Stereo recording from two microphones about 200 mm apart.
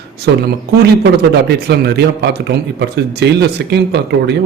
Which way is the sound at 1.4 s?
55° right (ahead or behind).